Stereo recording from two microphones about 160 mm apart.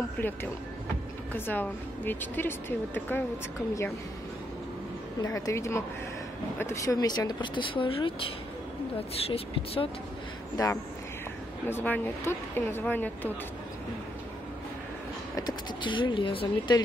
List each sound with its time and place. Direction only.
0.2 s a woman's voice: 10° left (ahead or behind)
5.2 s speech: 20° left (ahead or behind); by 9.8 s 35° left (ahead or behind)
11.6 s a woman's voice: 10° left (ahead or behind)
15.3 s speech: 30° left (ahead or behind)